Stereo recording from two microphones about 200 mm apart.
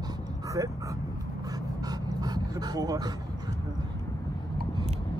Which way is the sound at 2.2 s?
20° right (ahead or behind).